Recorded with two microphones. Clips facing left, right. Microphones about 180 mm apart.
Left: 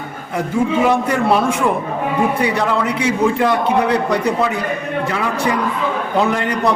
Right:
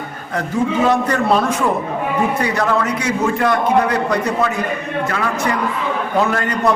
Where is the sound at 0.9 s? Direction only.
10° left (ahead or behind).